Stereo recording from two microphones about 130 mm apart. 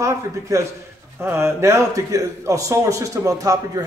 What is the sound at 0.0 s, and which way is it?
A man's voice, 25° right (ahead or behind).